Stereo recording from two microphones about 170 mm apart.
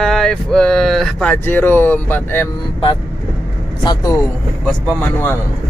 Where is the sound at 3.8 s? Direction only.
25° left (ahead or behind).